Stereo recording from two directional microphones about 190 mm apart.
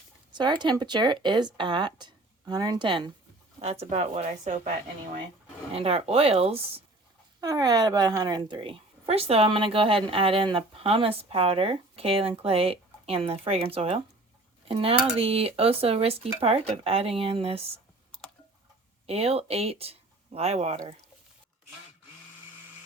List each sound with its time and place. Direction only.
0.3 s speech: 25° right (ahead or behind)
5.7 s speech: 30° right (ahead or behind)
7.4 s speech: 20° right (ahead or behind)
19.0 s speech: 30° right (ahead or behind)